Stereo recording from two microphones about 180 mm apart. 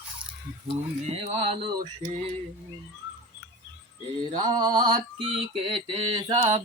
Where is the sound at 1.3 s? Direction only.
35° right (ahead or behind).